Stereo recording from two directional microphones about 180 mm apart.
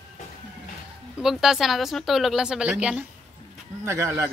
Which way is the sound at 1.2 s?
5° right (ahead or behind).